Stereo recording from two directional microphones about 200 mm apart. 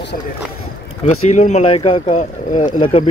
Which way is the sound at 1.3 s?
35° left (ahead or behind).